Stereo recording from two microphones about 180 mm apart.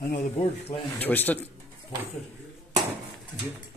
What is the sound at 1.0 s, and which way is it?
Speech, 10° left (ahead or behind).